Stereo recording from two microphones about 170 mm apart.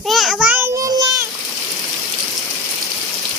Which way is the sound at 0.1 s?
Centre (ahead or behind).